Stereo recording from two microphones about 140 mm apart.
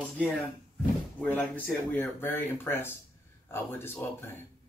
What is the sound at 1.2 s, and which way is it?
Speech, 10° left (ahead or behind).